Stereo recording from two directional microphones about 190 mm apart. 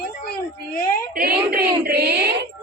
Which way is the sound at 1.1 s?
50° right (ahead or behind).